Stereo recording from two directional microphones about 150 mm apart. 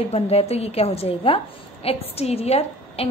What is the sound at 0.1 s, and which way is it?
A woman's voice, 45° left (ahead or behind).